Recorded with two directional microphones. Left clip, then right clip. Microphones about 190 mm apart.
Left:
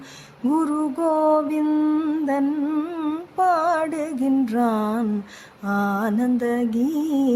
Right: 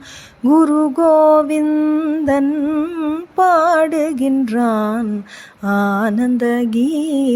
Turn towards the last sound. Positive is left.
turn(degrees=-15)  # may be behind; listen again after turning